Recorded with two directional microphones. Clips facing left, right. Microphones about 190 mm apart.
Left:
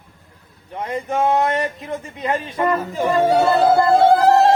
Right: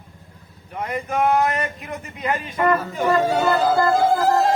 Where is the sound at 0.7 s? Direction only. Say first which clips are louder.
Left 2 dB; 25° left (ahead or behind).